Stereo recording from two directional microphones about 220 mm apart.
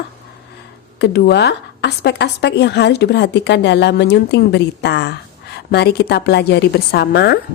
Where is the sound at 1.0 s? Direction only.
50° left (ahead or behind).